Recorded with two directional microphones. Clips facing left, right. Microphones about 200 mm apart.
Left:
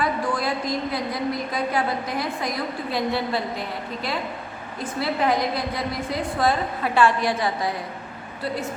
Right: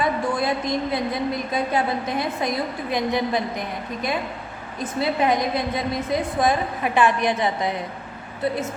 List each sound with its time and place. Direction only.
0.0 s a woman's voice: 20° right (ahead or behind)
4.8 s a woman's voice: 20° right (ahead or behind)